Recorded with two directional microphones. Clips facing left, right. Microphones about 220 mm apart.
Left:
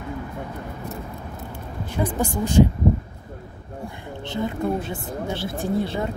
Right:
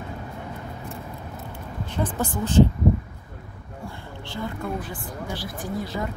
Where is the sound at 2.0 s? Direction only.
10° left (ahead or behind).